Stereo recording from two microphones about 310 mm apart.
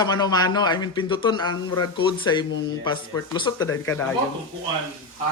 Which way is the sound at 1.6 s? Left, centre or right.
Left.